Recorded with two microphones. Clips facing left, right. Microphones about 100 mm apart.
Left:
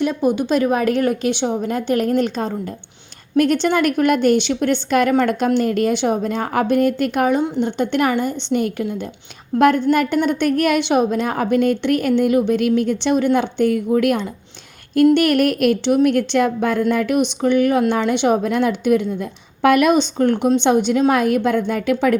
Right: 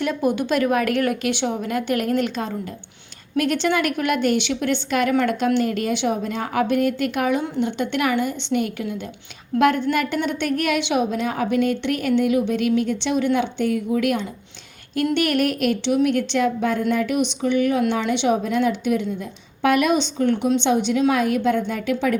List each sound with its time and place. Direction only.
0.0 s a woman's voice: 20° left (ahead or behind); by 22.2 s 60° left (ahead or behind)